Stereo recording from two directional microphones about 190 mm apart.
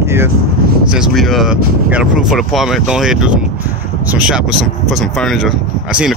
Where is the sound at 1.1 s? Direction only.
Centre (ahead or behind).